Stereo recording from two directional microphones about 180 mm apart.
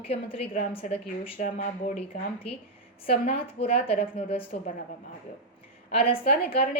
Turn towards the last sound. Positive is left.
turn(degrees=35)  # may be behind; listen again after turning